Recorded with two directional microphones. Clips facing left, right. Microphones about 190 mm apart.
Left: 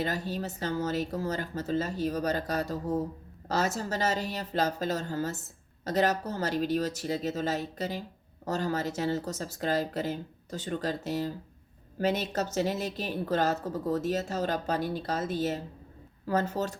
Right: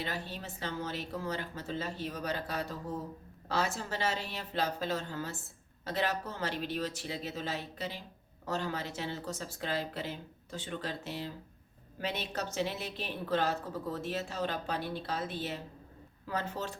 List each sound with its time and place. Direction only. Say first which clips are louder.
0.0 s speech: left 7 dB; 40° left (ahead or behind)